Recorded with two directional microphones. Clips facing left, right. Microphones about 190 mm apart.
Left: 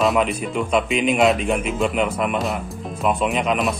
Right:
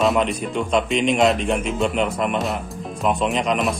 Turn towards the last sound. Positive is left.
turn(degrees=0)  # may be behind; listen again after turning